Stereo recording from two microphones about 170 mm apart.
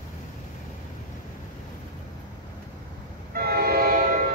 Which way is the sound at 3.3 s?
60° right (ahead or behind).